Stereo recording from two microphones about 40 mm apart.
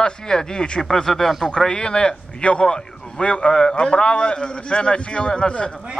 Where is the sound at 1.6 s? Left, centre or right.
Centre.